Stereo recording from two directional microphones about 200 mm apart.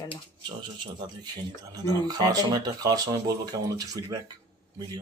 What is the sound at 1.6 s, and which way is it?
Speech, 20° right (ahead or behind).